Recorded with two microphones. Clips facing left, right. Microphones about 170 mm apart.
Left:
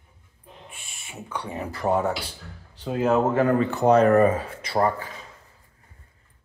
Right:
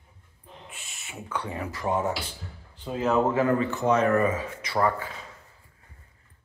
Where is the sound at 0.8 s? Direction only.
10° left (ahead or behind).